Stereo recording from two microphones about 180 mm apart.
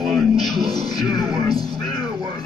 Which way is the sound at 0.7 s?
20° left (ahead or behind).